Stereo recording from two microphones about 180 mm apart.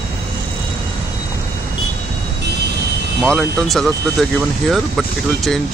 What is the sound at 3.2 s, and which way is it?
Speech, centre (ahead or behind).